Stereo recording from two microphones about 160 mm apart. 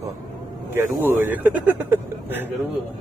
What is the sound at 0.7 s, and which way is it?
Speech, 15° right (ahead or behind).